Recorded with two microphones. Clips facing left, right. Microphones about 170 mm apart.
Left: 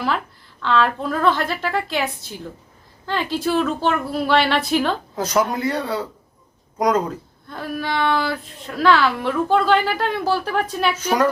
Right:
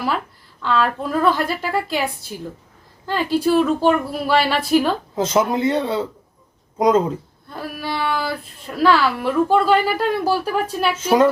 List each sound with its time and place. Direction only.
0.6 s speech: 5° right (ahead or behind)
5.1 s a man's voice: 25° right (ahead or behind)
7.5 s speech: 5° right (ahead or behind)